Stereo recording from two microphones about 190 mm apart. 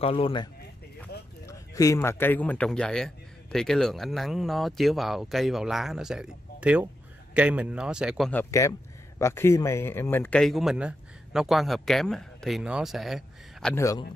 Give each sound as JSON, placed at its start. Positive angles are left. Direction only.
{"t": 0.0, "sound": "speech", "side_deg": 30}
{"t": 1.4, "sound": "a man's voice", "side_deg": 15}
{"t": 8.3, "sound": "speech", "side_deg": 15}
{"t": 13.7, "sound": "speech", "side_deg": 15}